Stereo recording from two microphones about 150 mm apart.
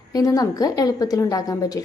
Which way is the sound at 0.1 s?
25° left (ahead or behind).